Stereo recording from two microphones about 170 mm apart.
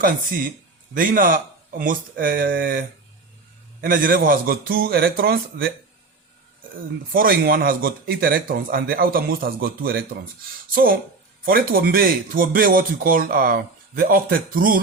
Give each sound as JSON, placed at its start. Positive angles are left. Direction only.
{"t": 0.9, "sound": "speech", "side_deg": -55}
{"t": 7.1, "sound": "speech", "side_deg": -55}